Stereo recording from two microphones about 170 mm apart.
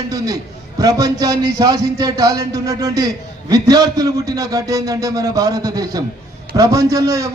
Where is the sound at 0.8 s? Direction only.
20° right (ahead or behind).